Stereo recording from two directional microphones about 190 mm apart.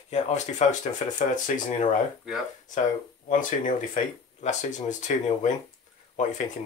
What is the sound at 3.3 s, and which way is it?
Speech, 40° left (ahead or behind).